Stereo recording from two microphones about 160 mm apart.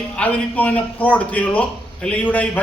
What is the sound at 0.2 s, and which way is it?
A man's voice, 10° left (ahead or behind).